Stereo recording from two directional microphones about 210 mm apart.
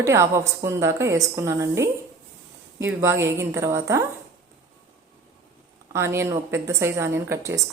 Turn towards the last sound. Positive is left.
turn(degrees=-10)  # may be behind; listen again after turning